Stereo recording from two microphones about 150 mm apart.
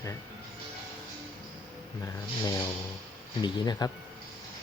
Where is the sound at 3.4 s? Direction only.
30° left (ahead or behind).